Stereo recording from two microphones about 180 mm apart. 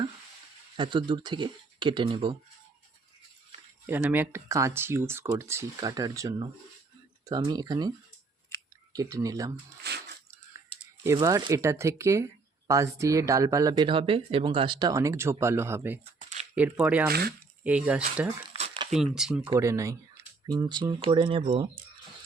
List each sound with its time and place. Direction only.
0.8 s speech: 25° right (ahead or behind)
3.8 s speech: 10° right (ahead or behind)
9.8 s a sound: 65° right (ahead or behind)
11.0 s speech: 15° right (ahead or behind)
16.0 s a sound: 40° right (ahead or behind)
16.6 s speech: 10° right (ahead or behind)
17.1 s speech: 60° right (ahead or behind)
17.6 s speech: 5° right (ahead or behind)
18.5 s crumpling: 35° right (ahead or behind)
18.9 s speech: 5° right (ahead or behind)
19.5 s speech: 15° right (ahead or behind)